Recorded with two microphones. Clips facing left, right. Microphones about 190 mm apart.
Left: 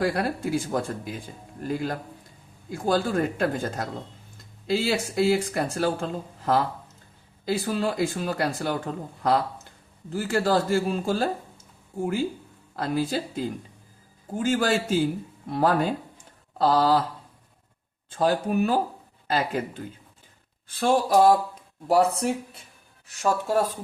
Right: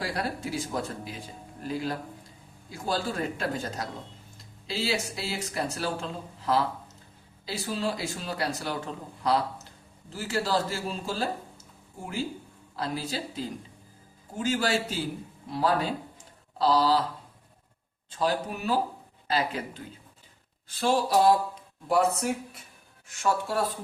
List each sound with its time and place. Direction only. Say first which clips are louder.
0.0 s speech: left 6 dB; 55° left (ahead or behind)
12.7 s speech: left 6 dB; 50° left (ahead or behind)
18.1 s speech: left 5 dB; 50° left (ahead or behind)
21.8 s speech: left 3 dB; 35° left (ahead or behind)